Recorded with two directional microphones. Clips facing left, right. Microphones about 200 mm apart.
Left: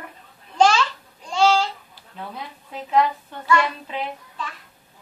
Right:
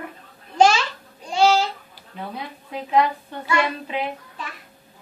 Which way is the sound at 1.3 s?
10° right (ahead or behind).